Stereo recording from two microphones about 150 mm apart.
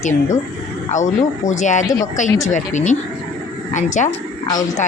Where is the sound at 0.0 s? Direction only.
50° left (ahead or behind).